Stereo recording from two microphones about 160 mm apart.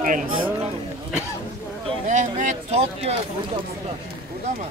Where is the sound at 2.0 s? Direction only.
50° right (ahead or behind).